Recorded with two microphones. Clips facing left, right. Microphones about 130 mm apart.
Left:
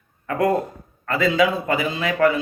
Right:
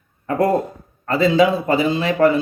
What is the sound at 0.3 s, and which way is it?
A man's voice, 30° right (ahead or behind).